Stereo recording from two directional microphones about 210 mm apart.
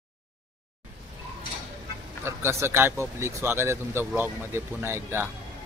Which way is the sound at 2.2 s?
10° right (ahead or behind).